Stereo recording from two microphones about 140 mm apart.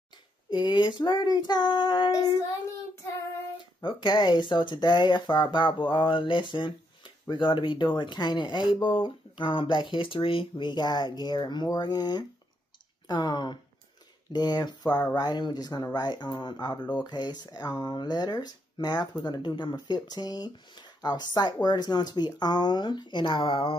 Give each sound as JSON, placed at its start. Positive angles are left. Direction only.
{"t": 0.5, "sound": "speech", "side_deg": 35}
{"t": 3.8, "sound": "speech", "side_deg": 35}